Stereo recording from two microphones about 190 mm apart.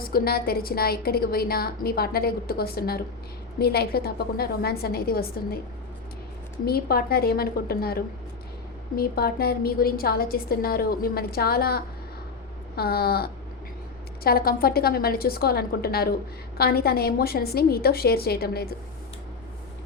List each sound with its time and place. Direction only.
0.0 s a woman's voice: 50° left (ahead or behind)
6.7 s a woman's voice: 55° left (ahead or behind)